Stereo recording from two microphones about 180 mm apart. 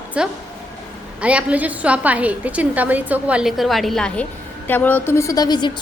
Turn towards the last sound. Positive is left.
turn(degrees=25)  # may be behind; listen again after turning